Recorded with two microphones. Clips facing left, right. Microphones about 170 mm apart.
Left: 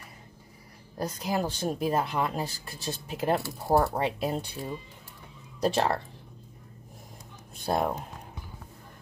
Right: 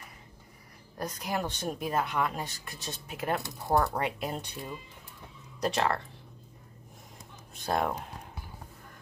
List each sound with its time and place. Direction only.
0.9 s speech: 30° left (ahead or behind)